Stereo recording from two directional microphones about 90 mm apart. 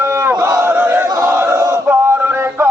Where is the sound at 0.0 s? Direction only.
30° right (ahead or behind).